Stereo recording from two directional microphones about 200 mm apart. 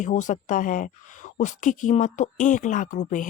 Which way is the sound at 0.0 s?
40° left (ahead or behind).